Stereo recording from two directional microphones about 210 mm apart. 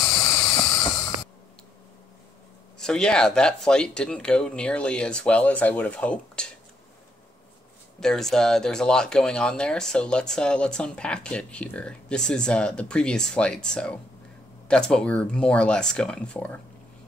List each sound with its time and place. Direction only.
0.0 s vehicle: 15° left (ahead or behind)
2.8 s speech: 5° left (ahead or behind)
8.0 s speech: centre (ahead or behind)